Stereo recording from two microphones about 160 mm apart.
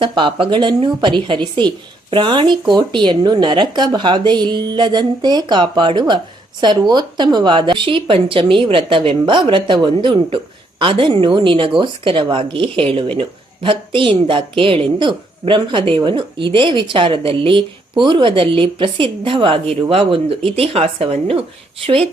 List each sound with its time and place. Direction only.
0.1 s a woman's voice: 30° right (ahead or behind)